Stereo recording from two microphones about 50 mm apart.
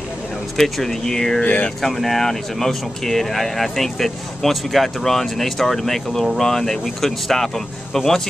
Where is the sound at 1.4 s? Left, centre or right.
Left.